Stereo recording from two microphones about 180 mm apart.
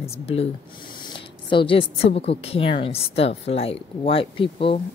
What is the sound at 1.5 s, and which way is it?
A woman's voice, 30° left (ahead or behind).